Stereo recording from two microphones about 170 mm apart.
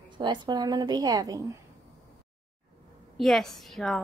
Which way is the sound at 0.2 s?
25° right (ahead or behind).